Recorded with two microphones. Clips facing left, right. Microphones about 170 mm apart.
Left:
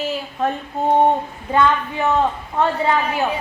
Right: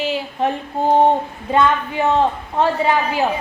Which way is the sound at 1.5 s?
20° right (ahead or behind).